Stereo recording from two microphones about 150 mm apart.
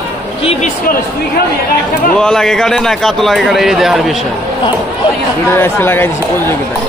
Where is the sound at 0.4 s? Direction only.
40° left (ahead or behind).